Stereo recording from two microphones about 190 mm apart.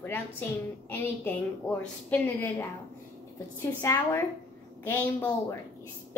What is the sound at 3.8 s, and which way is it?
A woman's voice, 15° left (ahead or behind).